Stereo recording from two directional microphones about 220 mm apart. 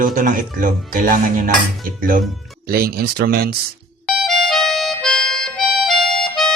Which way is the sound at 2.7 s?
45° right (ahead or behind).